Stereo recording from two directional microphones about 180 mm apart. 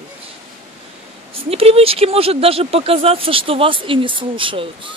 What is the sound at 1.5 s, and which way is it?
Speech, 35° right (ahead or behind).